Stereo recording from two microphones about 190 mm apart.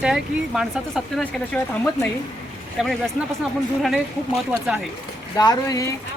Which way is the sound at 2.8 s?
Centre (ahead or behind).